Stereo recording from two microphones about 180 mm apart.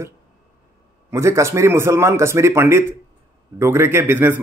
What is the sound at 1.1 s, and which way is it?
A man's voice, 15° right (ahead or behind).